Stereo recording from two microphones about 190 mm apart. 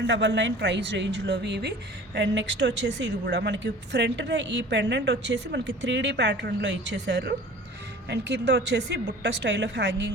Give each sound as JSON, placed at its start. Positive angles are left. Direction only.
{"t": 0.1, "sound": "speech", "side_deg": -70}